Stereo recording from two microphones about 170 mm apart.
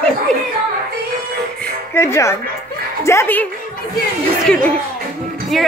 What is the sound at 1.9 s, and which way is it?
A woman's voice, 15° left (ahead or behind).